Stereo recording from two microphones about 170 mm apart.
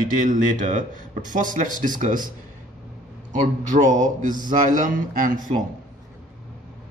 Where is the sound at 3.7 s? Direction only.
45° right (ahead or behind).